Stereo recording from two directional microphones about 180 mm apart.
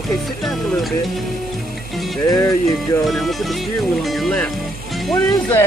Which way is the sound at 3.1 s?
Centre (ahead or behind).